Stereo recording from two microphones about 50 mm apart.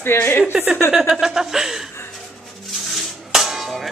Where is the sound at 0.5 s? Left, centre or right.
Right.